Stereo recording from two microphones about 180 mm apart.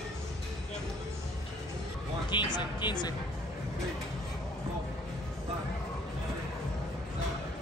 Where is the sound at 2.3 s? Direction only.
25° left (ahead or behind).